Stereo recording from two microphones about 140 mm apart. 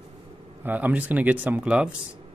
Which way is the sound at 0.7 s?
10° right (ahead or behind).